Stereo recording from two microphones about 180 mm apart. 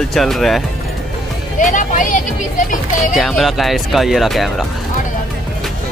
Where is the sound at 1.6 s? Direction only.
45° left (ahead or behind).